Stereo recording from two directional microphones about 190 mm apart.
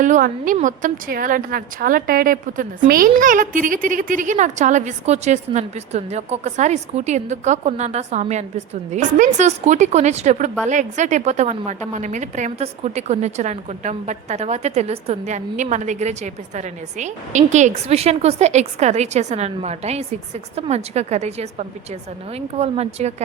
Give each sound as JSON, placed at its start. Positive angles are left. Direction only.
{"t": 0.0, "sound": "a woman's voice", "side_deg": -45}